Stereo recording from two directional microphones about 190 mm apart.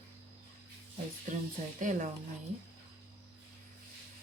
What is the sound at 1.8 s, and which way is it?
Speech, 40° right (ahead or behind).